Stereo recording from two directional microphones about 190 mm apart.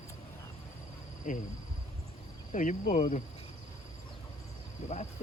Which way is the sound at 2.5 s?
45° left (ahead or behind).